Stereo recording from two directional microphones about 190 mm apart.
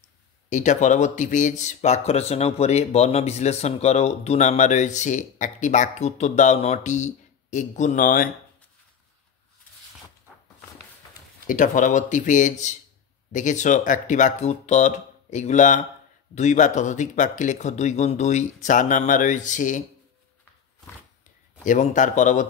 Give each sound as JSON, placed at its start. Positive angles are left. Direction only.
{"t": 0.5, "sound": "speech", "side_deg": 40}
{"t": 11.4, "sound": "speech", "side_deg": 45}
{"t": 21.6, "sound": "speech", "side_deg": 40}